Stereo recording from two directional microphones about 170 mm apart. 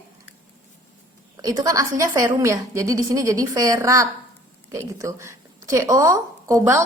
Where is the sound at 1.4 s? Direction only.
20° right (ahead or behind).